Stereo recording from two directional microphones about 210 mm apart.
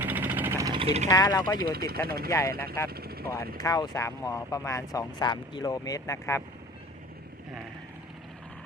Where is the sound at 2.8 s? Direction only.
45° right (ahead or behind).